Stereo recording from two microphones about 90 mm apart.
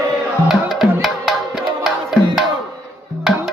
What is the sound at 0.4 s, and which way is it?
Music, 5° right (ahead or behind).